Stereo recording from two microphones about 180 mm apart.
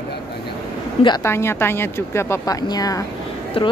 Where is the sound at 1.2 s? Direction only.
15° left (ahead or behind).